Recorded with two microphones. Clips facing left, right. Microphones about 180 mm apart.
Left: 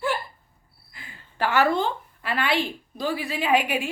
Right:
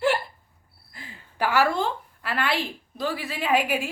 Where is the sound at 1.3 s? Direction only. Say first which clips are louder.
Left 1 dB; 10° right (ahead or behind).